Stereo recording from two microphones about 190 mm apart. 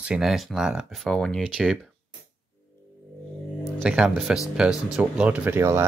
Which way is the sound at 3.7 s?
Centre (ahead or behind).